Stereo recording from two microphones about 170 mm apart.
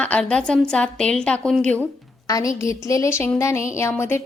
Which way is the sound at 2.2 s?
20° left (ahead or behind).